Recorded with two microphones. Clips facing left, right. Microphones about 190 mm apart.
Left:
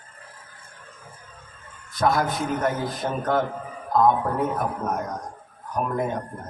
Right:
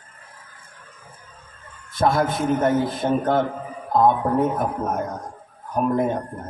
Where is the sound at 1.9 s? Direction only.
25° right (ahead or behind).